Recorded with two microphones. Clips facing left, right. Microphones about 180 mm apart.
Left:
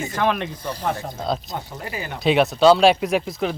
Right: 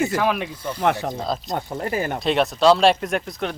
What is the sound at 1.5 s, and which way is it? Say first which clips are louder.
Speech: right 6 dB; 50° right (ahead or behind).